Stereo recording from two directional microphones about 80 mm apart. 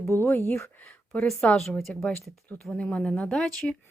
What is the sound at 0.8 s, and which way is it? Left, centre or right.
Speech, centre.